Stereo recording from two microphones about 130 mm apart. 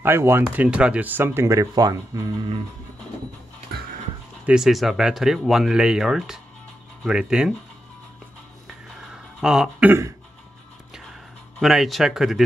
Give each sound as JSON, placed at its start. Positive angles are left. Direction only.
{"t": 0.0, "sound": "speech", "side_deg": -20}
{"t": 4.5, "sound": "speech", "side_deg": -5}
{"t": 8.6, "sound": "a sound", "side_deg": -5}
{"t": 11.6, "sound": "speech", "side_deg": 0}